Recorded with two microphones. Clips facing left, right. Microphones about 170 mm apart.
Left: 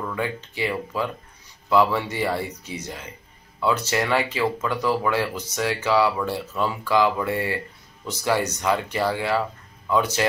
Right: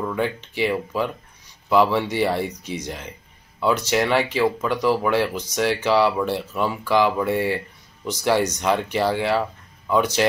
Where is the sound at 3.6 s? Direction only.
15° right (ahead or behind).